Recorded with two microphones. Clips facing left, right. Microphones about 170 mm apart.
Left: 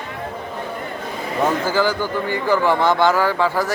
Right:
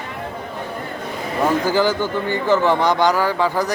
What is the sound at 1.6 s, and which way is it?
A man's voice, 15° right (ahead or behind).